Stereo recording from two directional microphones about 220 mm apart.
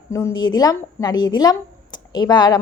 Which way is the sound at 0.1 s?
15° left (ahead or behind).